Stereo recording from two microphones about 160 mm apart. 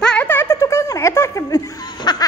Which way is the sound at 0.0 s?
10° left (ahead or behind).